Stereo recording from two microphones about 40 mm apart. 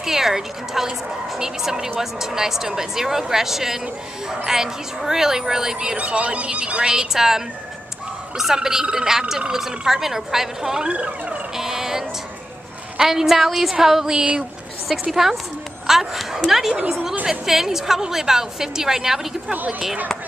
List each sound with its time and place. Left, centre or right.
0.0 s speech: centre
5.9 s speech: right; by 7.4 s centre
8.5 s speech: centre
10.9 s speech: right
11.5 s a sound: centre
13.0 s a woman's voice: centre